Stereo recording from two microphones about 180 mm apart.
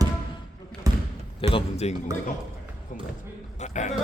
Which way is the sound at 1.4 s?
30° left (ahead or behind).